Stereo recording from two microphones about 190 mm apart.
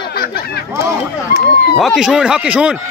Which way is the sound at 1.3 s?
55° left (ahead or behind).